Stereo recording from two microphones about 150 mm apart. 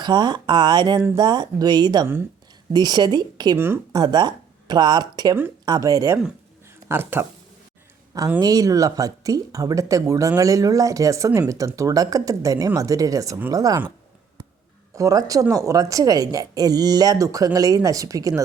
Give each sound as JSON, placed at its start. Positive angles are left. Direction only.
{"t": 0.0, "sound": "speech", "side_deg": -30}
{"t": 3.6, "sound": "speech", "side_deg": -15}
{"t": 4.0, "sound": "speech", "side_deg": -30}
{"t": 6.7, "sound": "a sound", "side_deg": -15}
{"t": 8.4, "sound": "speech", "side_deg": -25}
{"t": 14.9, "sound": "speech", "side_deg": -20}